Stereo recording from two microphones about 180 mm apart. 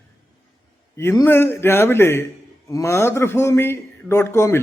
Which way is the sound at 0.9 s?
15° left (ahead or behind).